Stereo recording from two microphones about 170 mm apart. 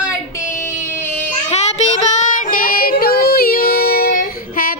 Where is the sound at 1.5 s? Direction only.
40° left (ahead or behind).